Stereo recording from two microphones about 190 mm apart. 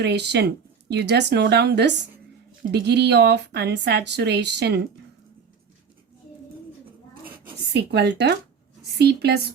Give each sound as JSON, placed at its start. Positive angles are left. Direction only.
{"t": 0.0, "sound": "speech", "side_deg": -60}
{"t": 7.7, "sound": "speech", "side_deg": -60}